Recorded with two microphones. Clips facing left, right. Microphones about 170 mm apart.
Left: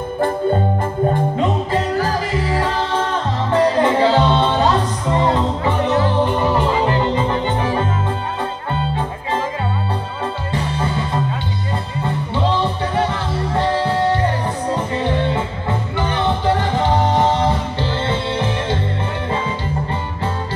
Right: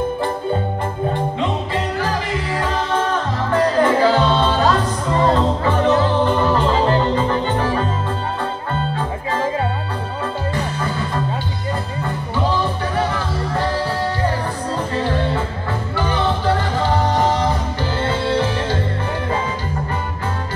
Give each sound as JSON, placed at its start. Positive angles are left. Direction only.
{"t": 1.4, "sound": "music", "side_deg": 40}
{"t": 10.5, "sound": "music", "side_deg": 25}